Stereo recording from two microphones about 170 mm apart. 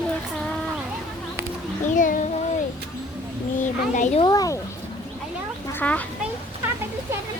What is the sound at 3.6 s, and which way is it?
Speech, 45° left (ahead or behind).